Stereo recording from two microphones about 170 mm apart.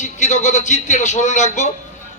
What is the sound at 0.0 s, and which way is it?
A man's voice, 45° left (ahead or behind).